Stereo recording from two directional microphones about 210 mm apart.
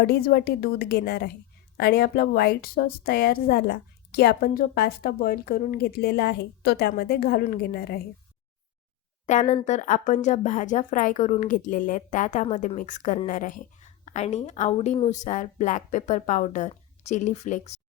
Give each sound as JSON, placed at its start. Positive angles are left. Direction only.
{"t": 0.0, "sound": "a woman's voice", "side_deg": 45}
{"t": 9.2, "sound": "speech", "side_deg": 35}